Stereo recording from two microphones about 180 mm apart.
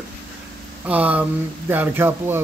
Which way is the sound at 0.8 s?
10° right (ahead or behind).